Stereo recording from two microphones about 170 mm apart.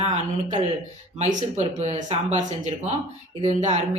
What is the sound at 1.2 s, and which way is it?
Speech, 45° right (ahead or behind).